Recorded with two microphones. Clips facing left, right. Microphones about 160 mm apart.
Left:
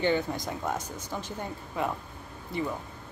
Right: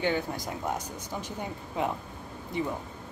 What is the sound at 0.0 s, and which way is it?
Speech, 5° right (ahead or behind).